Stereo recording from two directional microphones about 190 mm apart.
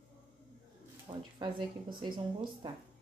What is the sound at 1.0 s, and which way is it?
Speech, 25° right (ahead or behind).